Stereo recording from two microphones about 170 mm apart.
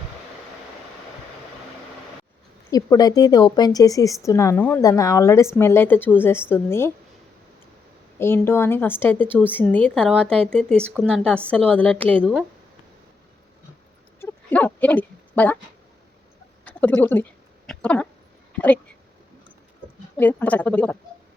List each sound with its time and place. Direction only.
2.6 s a woman's voice: 20° left (ahead or behind)
8.2 s a woman's voice: 15° left (ahead or behind)
14.2 s a sound: 10° left (ahead or behind)
16.6 s speech: 10° left (ahead or behind)
17.7 s a sound: 5° left (ahead or behind)
18.5 s speech: 10° left (ahead or behind)
20.1 s a woman's voice: 10° left (ahead or behind)